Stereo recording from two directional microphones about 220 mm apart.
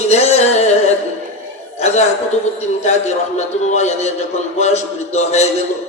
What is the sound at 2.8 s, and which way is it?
Speech, 30° left (ahead or behind).